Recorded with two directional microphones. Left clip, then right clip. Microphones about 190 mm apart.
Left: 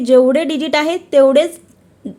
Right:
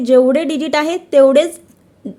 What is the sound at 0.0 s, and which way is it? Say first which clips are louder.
A woman's voice: even; 5° right (ahead or behind).